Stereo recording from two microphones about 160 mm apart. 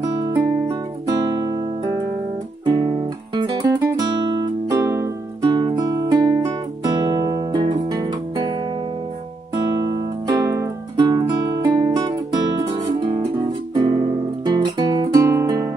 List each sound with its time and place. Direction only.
0.0 s music: 20° right (ahead or behind)
1.2 s guitar: 25° right (ahead or behind)
2.6 s music: 25° right (ahead or behind)
3.6 s music: 20° right (ahead or behind)
9.8 s music: 25° right (ahead or behind)
13.7 s guitar: 25° right (ahead or behind)